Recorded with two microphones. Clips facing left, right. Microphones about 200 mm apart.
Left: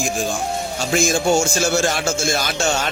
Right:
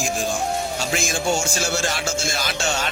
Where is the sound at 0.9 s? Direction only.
45° left (ahead or behind).